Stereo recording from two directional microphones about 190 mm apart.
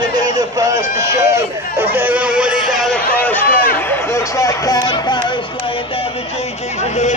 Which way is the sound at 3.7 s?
10° left (ahead or behind).